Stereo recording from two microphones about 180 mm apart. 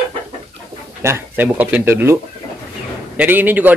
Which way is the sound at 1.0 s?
15° right (ahead or behind).